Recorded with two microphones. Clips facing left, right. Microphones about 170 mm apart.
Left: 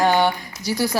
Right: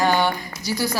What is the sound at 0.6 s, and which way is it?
Speech, 65° left (ahead or behind).